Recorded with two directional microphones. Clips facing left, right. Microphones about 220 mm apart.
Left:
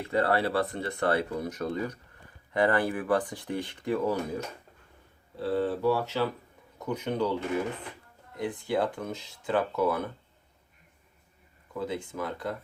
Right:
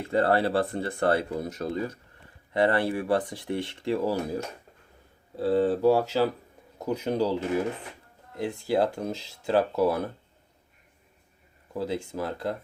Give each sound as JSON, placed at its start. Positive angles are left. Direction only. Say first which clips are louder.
{"t": 0.0, "sound": "speech", "louder": "right 3 dB", "side_deg": -30}
{"t": 5.4, "sound": "speech", "louder": "right 5 dB", "side_deg": -40}
{"t": 11.7, "sound": "speech", "louder": "right 3 dB", "side_deg": -35}